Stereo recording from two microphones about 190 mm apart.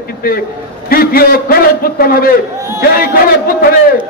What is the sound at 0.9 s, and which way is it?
A man's voice, 50° left (ahead or behind).